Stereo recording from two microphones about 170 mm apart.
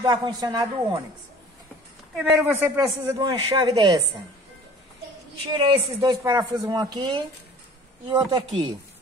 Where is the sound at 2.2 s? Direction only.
15° right (ahead or behind).